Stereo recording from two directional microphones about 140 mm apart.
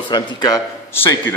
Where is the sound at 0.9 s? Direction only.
15° left (ahead or behind).